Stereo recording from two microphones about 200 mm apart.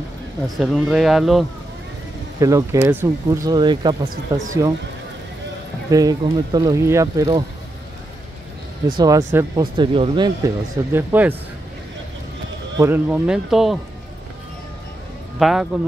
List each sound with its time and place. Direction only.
0.6 s speech: centre (ahead or behind)
2.4 s speech: 15° right (ahead or behind)
4.1 s speech: 40° right (ahead or behind)
5.9 s speech: 20° right (ahead or behind)
8.9 s speech: 20° right (ahead or behind)
9.8 s speech: 25° right (ahead or behind); by 11.3 s 10° right (ahead or behind)
12.7 s speech: 10° right (ahead or behind)
15.3 s speech: centre (ahead or behind)